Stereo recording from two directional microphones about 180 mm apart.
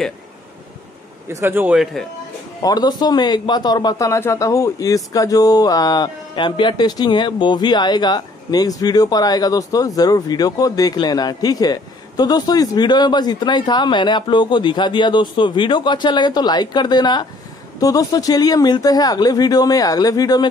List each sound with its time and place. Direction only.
1.3 s a man's voice: 10° right (ahead or behind)
2.6 s a man's voice: 20° left (ahead or behind)